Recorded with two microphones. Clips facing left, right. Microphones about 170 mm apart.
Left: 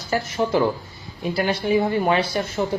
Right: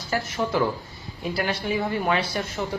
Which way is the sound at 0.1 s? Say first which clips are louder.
Left 4 dB; 20° left (ahead or behind).